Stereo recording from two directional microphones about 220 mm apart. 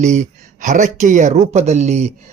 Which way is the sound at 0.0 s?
30° right (ahead or behind).